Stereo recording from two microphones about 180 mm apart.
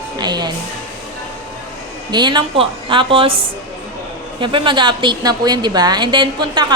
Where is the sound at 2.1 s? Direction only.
25° right (ahead or behind).